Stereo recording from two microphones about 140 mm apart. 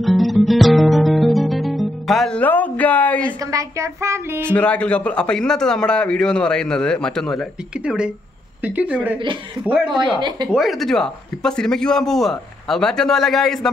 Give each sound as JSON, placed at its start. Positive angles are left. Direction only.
{"t": 0.0, "sound": "guitar", "side_deg": 0}
{"t": 3.3, "sound": "speech", "side_deg": -20}
{"t": 4.4, "sound": "a man's voice", "side_deg": 10}
{"t": 10.1, "sound": "speech", "side_deg": -30}
{"t": 10.5, "sound": "a man's voice", "side_deg": 0}